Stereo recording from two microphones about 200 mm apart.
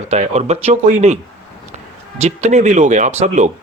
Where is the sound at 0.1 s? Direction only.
35° right (ahead or behind).